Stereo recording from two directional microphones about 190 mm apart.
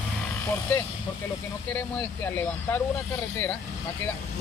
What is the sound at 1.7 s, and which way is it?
Speech, 5° left (ahead or behind).